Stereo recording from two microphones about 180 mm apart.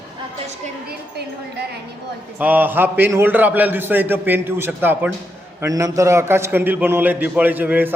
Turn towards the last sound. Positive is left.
turn(degrees=-10)  # may be behind; listen again after turning